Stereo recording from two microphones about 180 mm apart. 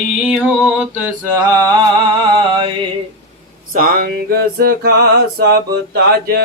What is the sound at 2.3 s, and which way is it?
Mantra, 25° right (ahead or behind).